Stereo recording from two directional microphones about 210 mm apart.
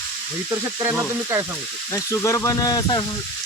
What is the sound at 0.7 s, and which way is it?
Speech, 10° right (ahead or behind).